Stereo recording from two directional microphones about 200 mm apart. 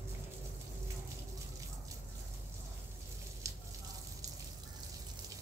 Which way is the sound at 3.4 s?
15° right (ahead or behind).